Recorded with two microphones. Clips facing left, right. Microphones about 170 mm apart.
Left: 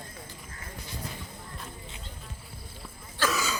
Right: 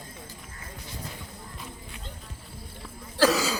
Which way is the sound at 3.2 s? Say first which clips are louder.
Right 7 dB; 35° right (ahead or behind).